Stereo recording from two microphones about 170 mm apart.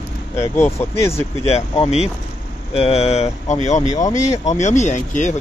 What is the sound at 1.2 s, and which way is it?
Speech, 35° left (ahead or behind).